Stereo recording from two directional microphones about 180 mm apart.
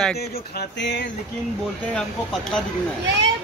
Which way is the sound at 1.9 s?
5° left (ahead or behind).